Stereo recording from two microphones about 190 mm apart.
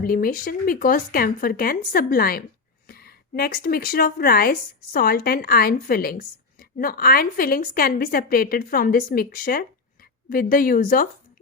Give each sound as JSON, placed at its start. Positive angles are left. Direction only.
{"t": 0.0, "sound": "speech", "side_deg": 50}